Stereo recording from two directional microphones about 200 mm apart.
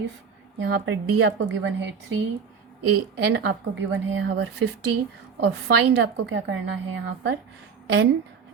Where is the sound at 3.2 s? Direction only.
60° right (ahead or behind).